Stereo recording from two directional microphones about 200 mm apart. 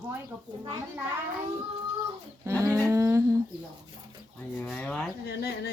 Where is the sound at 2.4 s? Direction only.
15° right (ahead or behind).